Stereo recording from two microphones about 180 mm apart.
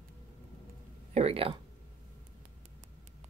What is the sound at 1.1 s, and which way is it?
Speech, 35° right (ahead or behind).